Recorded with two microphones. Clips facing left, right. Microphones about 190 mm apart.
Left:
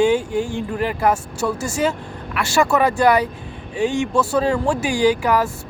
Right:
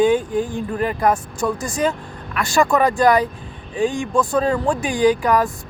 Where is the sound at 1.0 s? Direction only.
10° left (ahead or behind).